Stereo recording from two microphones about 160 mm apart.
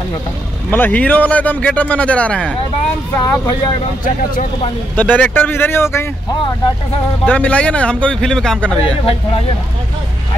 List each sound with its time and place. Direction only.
0.7 s speech: 10° left (ahead or behind)
3.3 s speech: 20° left (ahead or behind)
4.0 s speech: 60° left (ahead or behind)
4.9 s speech: 10° left (ahead or behind)
7.2 s speech: 10° left (ahead or behind)